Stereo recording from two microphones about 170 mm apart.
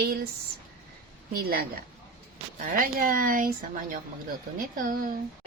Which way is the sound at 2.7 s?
55° right (ahead or behind).